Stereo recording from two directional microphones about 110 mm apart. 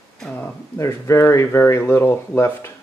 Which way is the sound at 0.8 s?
25° left (ahead or behind).